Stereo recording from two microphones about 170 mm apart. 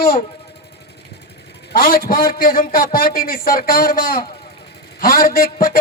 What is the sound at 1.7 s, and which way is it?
A man's voice, 55° left (ahead or behind).